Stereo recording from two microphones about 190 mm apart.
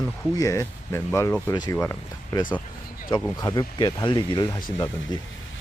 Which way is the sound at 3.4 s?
20° left (ahead or behind).